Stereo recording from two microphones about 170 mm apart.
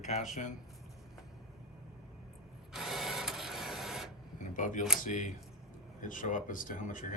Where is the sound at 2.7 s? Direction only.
Centre (ahead or behind).